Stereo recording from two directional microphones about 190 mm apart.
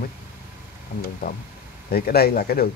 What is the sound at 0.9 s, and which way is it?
Speech, 55° left (ahead or behind).